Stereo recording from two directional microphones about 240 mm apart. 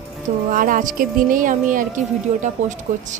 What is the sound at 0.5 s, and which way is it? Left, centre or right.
A woman's voice, right.